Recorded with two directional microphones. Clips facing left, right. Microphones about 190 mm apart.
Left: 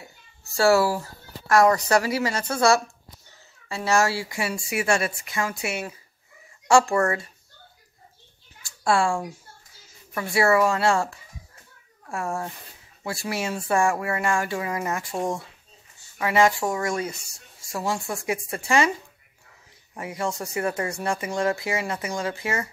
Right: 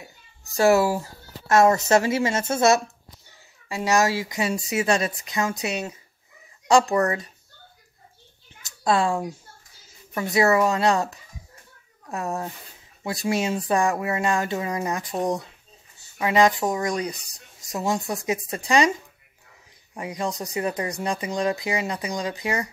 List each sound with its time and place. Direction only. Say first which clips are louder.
0.0 s a sound: right 1 dB; 15° right (ahead or behind)
1.5 s speech: right 1 dB; 25° right (ahead or behind)
8.6 s speech: even; 20° right (ahead or behind)
20.0 s speech: even; 15° right (ahead or behind)